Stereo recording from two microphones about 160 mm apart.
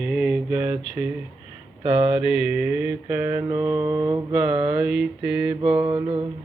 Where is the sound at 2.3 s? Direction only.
5° right (ahead or behind).